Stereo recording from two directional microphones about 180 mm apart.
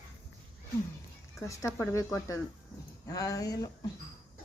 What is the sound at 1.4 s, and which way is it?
Speech, 15° left (ahead or behind).